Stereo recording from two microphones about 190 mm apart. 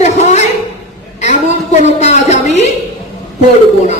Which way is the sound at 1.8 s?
35° left (ahead or behind).